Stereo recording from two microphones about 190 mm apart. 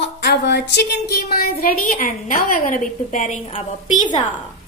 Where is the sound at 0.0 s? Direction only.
65° left (ahead or behind); by 3.3 s 45° left (ahead or behind).